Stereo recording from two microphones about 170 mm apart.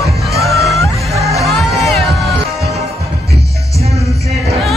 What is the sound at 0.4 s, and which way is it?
Music, centre (ahead or behind).